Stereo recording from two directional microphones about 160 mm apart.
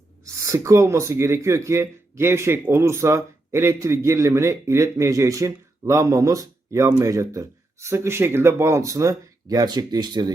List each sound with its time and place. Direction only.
0.4 s speech: 20° right (ahead or behind)